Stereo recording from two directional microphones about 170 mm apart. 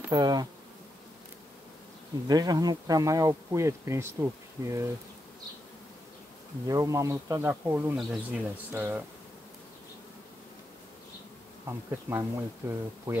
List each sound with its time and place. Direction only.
0.1 s speech: 25° right (ahead or behind)
2.2 s speech: 25° right (ahead or behind)
6.7 s speech: 20° right (ahead or behind)
11.9 s speech: 15° right (ahead or behind)